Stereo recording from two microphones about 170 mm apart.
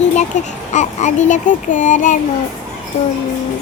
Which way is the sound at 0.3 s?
45° left (ahead or behind).